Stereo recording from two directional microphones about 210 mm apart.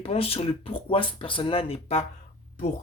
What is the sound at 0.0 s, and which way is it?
A man's voice, 25° left (ahead or behind).